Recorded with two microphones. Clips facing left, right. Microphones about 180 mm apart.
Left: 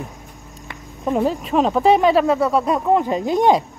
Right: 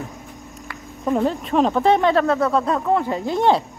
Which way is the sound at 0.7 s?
10° left (ahead or behind).